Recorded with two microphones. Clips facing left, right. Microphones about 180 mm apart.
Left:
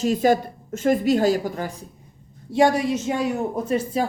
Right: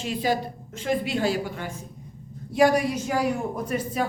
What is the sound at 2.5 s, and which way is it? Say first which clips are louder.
A woman's voice: left 2 dB; 25° left (ahead or behind).